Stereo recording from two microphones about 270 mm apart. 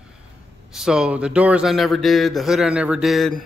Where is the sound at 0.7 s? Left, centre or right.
Centre.